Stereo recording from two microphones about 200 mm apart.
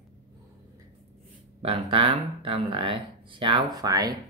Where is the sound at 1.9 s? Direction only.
25° right (ahead or behind).